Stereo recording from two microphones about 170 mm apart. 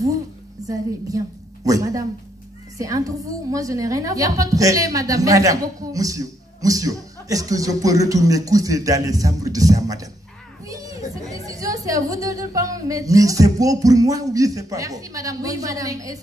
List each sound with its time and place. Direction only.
0.7 s a woman's voice: 20° right (ahead or behind)